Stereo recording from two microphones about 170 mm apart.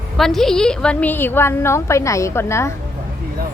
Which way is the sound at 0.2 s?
Centre (ahead or behind).